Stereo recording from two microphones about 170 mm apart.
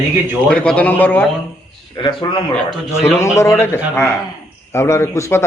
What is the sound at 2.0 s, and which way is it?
Speech, 30° left (ahead or behind).